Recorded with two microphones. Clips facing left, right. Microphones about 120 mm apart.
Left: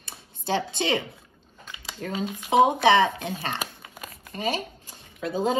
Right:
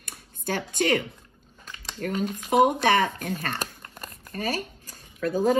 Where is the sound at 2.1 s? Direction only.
10° left (ahead or behind).